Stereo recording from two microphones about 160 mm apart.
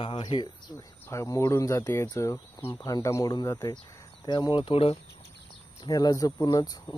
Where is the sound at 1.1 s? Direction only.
20° left (ahead or behind); by 5.0 s 35° left (ahead or behind).